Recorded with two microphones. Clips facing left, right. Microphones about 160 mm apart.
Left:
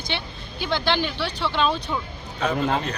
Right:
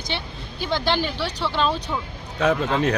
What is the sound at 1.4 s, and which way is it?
Speech, centre (ahead or behind).